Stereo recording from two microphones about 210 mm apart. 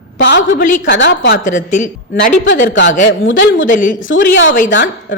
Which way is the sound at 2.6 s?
60° left (ahead or behind).